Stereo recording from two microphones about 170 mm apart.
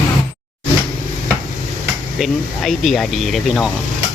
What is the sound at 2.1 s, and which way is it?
Speech, centre (ahead or behind).